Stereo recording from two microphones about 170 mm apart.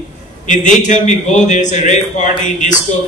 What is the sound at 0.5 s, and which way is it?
A man's voice, 45° left (ahead or behind).